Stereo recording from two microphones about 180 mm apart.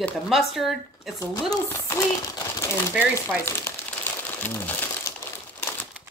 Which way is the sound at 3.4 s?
10° left (ahead or behind).